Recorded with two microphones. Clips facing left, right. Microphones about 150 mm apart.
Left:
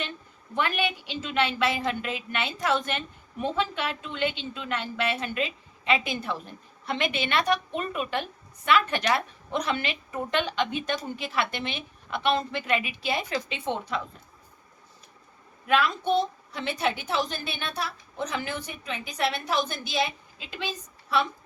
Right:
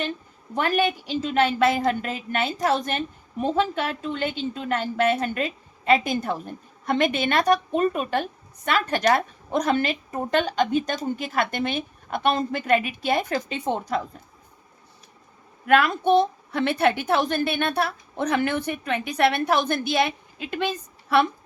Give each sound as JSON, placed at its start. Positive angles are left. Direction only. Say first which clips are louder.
{"t": 0.5, "sound": "a woman's voice", "louder": "right 5 dB", "side_deg": -40}
{"t": 15.6, "sound": "a woman's voice", "louder": "right 5 dB", "side_deg": -55}